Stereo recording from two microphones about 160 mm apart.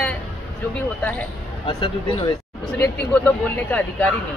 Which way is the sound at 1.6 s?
30° left (ahead or behind).